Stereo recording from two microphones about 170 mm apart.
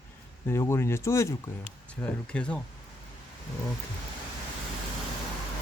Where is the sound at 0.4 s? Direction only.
15° left (ahead or behind).